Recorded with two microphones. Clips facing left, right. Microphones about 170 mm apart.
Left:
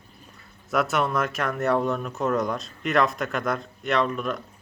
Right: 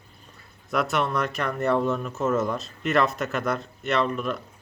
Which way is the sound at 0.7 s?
Centre (ahead or behind).